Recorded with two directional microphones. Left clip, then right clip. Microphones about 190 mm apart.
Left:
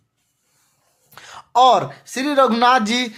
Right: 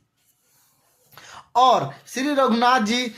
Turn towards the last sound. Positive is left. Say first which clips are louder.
# left 3 dB
turn(degrees=25)  # may be behind; listen again after turning